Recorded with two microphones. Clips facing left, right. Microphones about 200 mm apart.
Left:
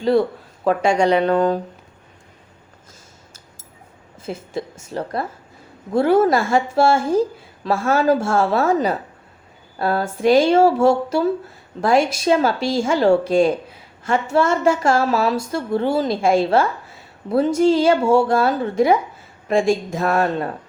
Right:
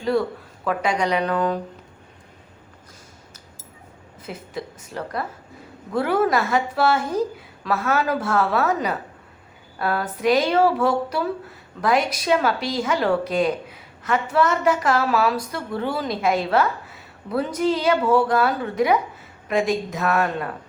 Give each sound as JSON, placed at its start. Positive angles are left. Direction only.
{"t": 0.6, "sound": "a woman's voice", "side_deg": 30}
{"t": 4.3, "sound": "a woman's voice", "side_deg": 25}